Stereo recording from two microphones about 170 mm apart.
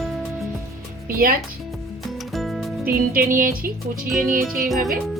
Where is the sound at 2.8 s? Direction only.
60° right (ahead or behind).